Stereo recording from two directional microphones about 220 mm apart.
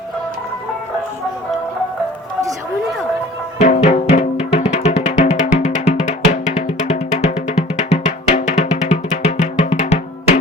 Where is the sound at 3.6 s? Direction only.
30° left (ahead or behind).